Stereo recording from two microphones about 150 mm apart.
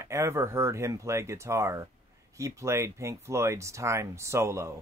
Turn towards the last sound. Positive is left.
turn(degrees=-20)  # may be behind; listen again after turning